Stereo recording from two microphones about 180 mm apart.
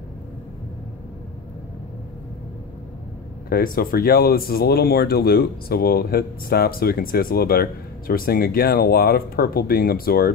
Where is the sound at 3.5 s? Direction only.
55° left (ahead or behind).